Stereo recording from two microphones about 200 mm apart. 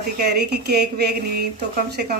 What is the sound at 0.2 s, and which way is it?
Speech, 55° right (ahead or behind).